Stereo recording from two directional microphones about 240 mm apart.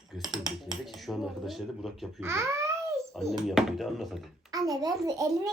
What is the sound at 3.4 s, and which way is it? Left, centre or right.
Speech, centre.